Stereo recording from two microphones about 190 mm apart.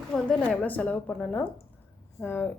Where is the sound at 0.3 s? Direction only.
5° left (ahead or behind).